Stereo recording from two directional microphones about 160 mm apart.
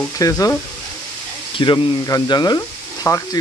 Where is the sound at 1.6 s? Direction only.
25° left (ahead or behind).